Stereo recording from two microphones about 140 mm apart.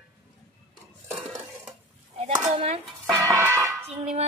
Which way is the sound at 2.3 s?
45° right (ahead or behind).